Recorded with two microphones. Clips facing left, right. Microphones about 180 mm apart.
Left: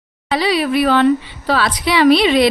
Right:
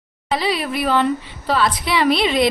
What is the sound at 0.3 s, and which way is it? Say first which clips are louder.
A woman's voice: left 5 dB; 85° left.